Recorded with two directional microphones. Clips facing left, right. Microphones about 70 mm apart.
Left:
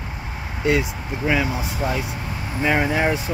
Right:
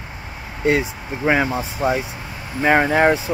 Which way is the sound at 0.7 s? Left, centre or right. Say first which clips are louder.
Right 2 dB; right.